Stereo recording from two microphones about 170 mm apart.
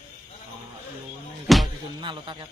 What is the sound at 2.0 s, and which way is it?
Speech, 30° right (ahead or behind).